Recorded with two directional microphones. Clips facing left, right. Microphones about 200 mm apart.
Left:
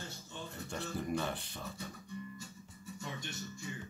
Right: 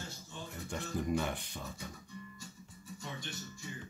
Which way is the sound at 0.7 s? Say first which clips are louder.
Right 3 dB; 15° right (ahead or behind).